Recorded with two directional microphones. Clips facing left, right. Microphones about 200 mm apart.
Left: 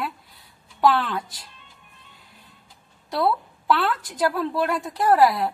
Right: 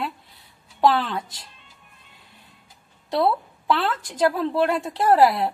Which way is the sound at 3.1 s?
25° right (ahead or behind).